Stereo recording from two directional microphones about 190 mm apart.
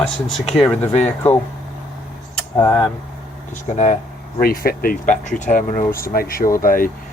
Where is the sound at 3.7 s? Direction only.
40° left (ahead or behind).